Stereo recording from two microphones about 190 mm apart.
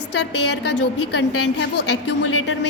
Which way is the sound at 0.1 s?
65° left (ahead or behind).